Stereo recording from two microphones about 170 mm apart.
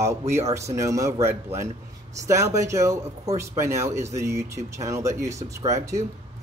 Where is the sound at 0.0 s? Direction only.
15° right (ahead or behind).